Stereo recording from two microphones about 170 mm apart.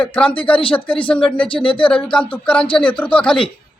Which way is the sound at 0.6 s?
30° left (ahead or behind).